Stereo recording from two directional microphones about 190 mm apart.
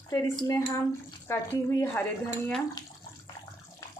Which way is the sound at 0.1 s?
15° left (ahead or behind).